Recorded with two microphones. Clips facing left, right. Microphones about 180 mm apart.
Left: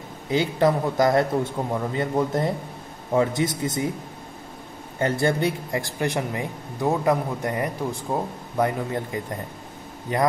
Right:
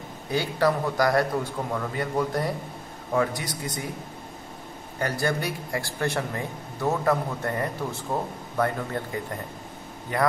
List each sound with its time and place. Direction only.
0.3 s a man's voice: 20° left (ahead or behind)
4.9 s a man's voice: 25° left (ahead or behind)